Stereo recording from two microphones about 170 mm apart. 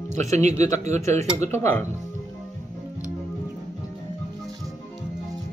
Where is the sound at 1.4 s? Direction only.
15° left (ahead or behind).